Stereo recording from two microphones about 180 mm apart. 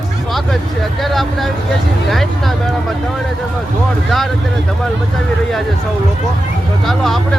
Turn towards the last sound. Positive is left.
turn(degrees=0)  # may be behind; listen again after turning